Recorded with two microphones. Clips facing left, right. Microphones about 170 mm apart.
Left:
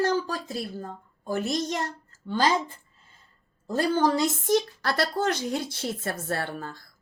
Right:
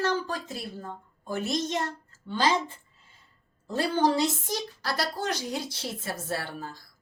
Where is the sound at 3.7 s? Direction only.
45° left (ahead or behind).